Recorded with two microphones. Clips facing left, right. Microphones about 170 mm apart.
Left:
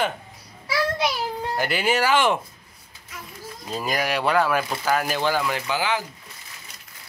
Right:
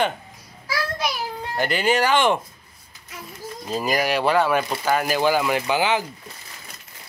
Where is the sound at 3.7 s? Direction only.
Centre (ahead or behind); by 6.0 s 20° right (ahead or behind).